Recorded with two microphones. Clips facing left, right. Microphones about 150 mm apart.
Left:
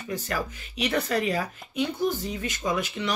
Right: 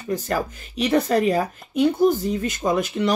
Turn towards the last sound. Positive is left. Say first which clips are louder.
# right 7 dB
turn(degrees=-50)  # may be behind; listen again after turning